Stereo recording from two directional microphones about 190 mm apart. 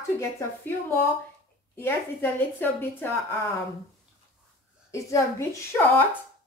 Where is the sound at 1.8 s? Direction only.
10° left (ahead or behind).